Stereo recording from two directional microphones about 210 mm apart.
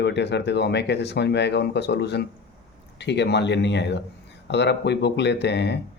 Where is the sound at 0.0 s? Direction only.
55° left (ahead or behind).